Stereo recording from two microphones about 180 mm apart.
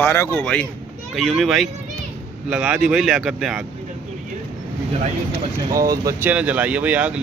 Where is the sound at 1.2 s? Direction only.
Centre (ahead or behind).